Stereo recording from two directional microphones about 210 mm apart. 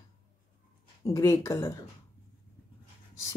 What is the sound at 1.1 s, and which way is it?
Speech, 15° left (ahead or behind).